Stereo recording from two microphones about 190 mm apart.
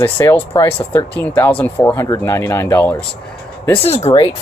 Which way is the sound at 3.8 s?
30° left (ahead or behind).